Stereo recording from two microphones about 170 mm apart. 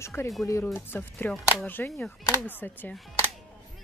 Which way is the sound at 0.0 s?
15° left (ahead or behind).